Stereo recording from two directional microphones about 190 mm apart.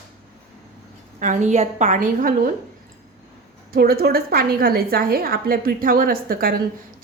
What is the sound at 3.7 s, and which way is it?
A woman's voice, 55° right (ahead or behind).